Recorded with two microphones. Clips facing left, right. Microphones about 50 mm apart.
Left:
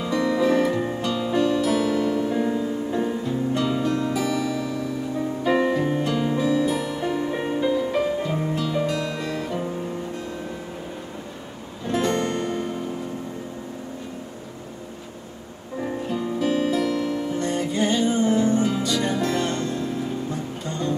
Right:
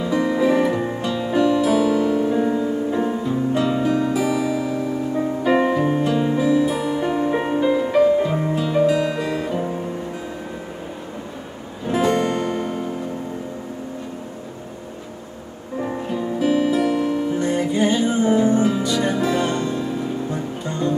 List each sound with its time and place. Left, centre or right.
0.0 s music: centre
1.7 s music: centre
11.9 s music: centre
15.8 s music: centre